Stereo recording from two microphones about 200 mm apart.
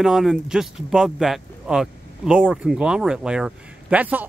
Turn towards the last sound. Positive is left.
turn(degrees=-10)  # may be behind; listen again after turning